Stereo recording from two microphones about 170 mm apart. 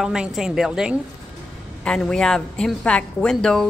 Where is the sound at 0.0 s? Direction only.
5° right (ahead or behind).